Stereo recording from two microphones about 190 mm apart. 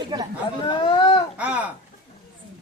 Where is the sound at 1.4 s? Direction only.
10° right (ahead or behind).